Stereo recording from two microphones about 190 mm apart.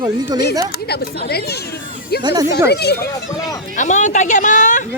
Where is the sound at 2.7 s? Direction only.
60° left (ahead or behind).